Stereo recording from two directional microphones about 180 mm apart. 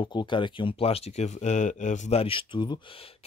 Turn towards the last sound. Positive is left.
turn(degrees=25)  # may be behind; listen again after turning